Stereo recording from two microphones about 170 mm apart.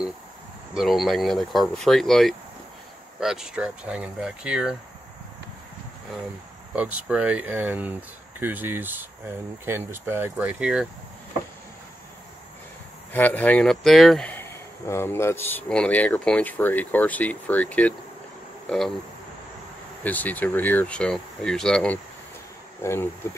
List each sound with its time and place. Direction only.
0.7 s speech: centre (ahead or behind)
6.7 s speech: 10° right (ahead or behind)
13.1 s speech: 10° left (ahead or behind)
20.0 s speech: 10° left (ahead or behind)